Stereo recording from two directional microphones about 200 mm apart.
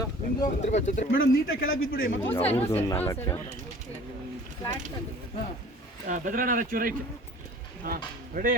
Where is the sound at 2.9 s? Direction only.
15° left (ahead or behind).